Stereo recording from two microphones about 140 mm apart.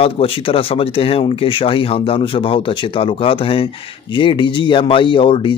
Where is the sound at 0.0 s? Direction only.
40° left (ahead or behind).